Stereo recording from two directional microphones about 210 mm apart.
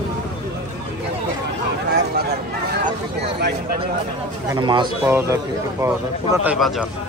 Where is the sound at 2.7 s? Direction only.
50° right (ahead or behind).